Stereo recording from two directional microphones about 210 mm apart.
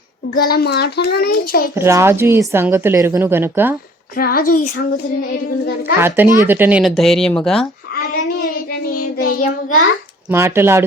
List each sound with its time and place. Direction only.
0.3 s a child's voice: 45° left (ahead or behind)
1.7 s a woman's voice: 10° right (ahead or behind)
4.2 s a child's voice: 45° left (ahead or behind)
6.0 s a woman's voice: 10° right (ahead or behind)
9.1 s child singing: 45° left (ahead or behind)
10.2 s a woman's voice: 10° right (ahead or behind)